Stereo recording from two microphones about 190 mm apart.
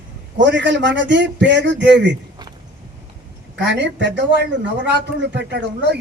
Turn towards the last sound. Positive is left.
turn(degrees=-65)  # may be behind; listen again after turning